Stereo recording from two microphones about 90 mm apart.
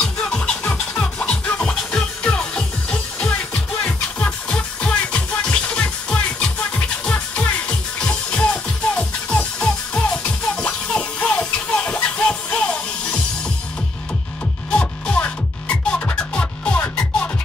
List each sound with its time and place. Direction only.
0.0 s music: 10° left (ahead or behind)
14.7 s music: 10° left (ahead or behind)